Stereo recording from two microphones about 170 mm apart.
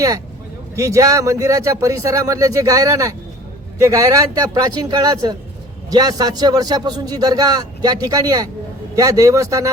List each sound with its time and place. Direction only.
0.8 s a man's voice: 20° right (ahead or behind)